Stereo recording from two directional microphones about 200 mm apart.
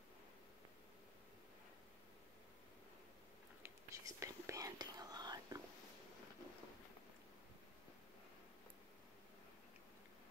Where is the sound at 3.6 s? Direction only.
15° right (ahead or behind).